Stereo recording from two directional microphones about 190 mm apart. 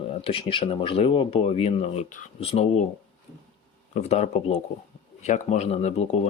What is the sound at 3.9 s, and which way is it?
Speech, 35° left (ahead or behind).